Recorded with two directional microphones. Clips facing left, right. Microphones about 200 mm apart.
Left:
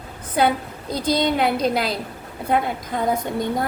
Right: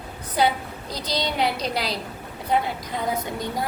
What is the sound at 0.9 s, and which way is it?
A woman's voice, 50° left (ahead or behind).